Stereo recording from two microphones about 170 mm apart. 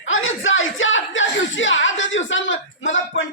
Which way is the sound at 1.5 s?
90° left.